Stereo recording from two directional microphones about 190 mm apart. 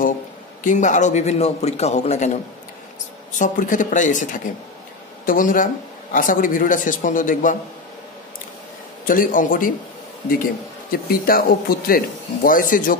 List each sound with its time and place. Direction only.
0.7 s a man's voice: 40° left (ahead or behind)
3.3 s a man's voice: 40° left (ahead or behind)
9.0 s a man's voice: 45° left (ahead or behind)